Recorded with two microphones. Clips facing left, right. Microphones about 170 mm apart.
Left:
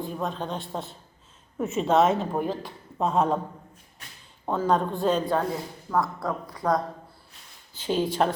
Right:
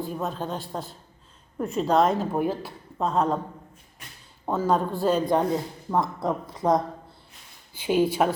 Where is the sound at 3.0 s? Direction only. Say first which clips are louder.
Even; 5° left (ahead or behind).